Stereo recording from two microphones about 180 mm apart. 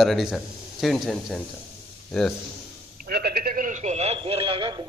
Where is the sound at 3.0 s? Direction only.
60° right (ahead or behind); by 4.8 s 25° right (ahead or behind).